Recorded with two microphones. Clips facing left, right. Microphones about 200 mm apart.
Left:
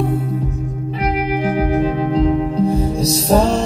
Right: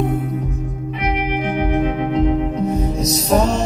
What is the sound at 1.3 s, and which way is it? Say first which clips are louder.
Music: left 2 dB; 35° left (ahead or behind).